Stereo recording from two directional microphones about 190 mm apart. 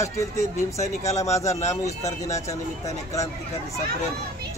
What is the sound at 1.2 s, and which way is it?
Speech, 15° left (ahead or behind).